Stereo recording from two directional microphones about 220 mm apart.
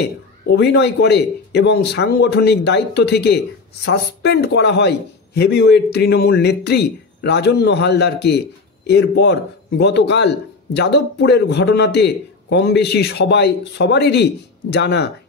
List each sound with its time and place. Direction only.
0.0 s a man's voice: 50° left (ahead or behind)